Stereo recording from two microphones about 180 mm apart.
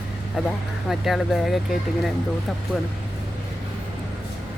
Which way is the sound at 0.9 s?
Centre (ahead or behind).